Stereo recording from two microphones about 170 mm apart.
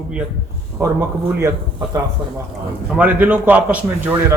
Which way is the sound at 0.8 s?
15° right (ahead or behind).